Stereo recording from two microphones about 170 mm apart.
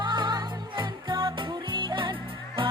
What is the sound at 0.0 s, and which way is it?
Music, 25° right (ahead or behind).